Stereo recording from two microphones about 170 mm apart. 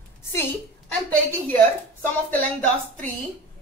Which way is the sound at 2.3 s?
10° left (ahead or behind).